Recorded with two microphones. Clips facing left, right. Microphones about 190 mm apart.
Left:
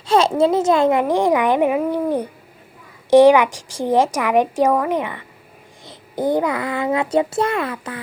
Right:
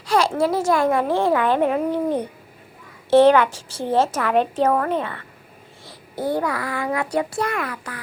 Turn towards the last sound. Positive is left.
turn(degrees=25)  # may be behind; listen again after turning